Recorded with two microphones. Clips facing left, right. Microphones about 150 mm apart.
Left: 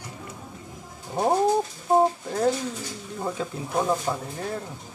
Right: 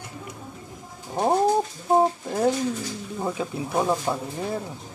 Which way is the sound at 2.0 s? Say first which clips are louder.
Even; 10° right (ahead or behind).